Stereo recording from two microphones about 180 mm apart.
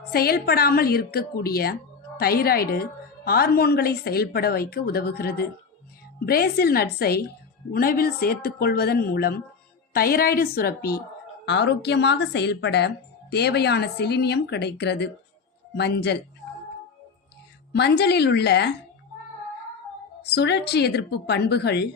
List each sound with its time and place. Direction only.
0.1 s a woman's voice: 60° left (ahead or behind)
11.4 s speech: 70° left (ahead or behind)
17.7 s speech: 65° left (ahead or behind)
20.2 s speech: 70° left (ahead or behind)